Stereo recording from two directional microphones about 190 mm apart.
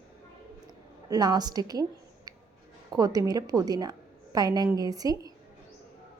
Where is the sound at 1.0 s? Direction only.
20° right (ahead or behind).